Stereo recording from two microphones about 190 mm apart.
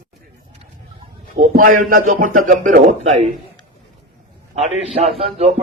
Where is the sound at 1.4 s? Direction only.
45° right (ahead or behind).